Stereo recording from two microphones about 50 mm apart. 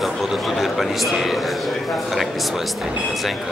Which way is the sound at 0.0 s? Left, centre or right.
Centre.